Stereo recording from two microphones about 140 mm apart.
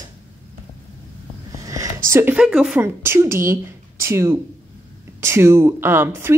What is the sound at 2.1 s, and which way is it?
Speech, 15° right (ahead or behind).